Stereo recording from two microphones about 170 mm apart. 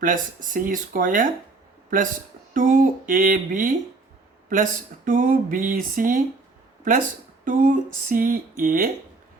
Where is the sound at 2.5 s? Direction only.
50° right (ahead or behind).